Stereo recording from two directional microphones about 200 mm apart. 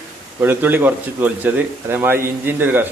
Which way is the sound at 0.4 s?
10° right (ahead or behind).